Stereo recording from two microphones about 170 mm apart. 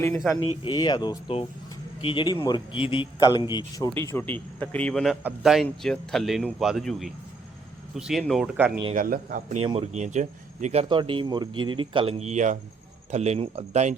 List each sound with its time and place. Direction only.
0.1 s speech: centre (ahead or behind)
0.6 s speech: 25° left (ahead or behind)
3.9 s a man's voice: 15° left (ahead or behind); by 8.8 s 10° right (ahead or behind)
9.0 s speech: 55° right (ahead or behind)
9.6 s speech: 35° right (ahead or behind)